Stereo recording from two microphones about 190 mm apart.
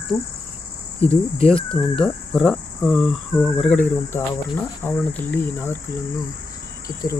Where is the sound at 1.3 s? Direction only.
30° left (ahead or behind).